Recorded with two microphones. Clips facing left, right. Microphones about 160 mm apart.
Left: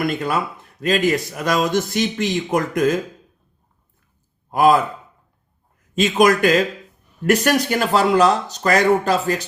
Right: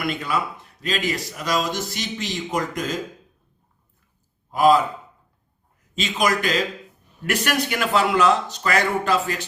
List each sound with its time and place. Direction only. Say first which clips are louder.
0.0 s speech: left 4 dB; 45° left (ahead or behind)
4.5 s speech: left 2 dB; 55° left (ahead or behind)
5.9 s speech: left 7 dB; 50° left (ahead or behind)
7.3 s speech: left 7 dB; 40° left (ahead or behind)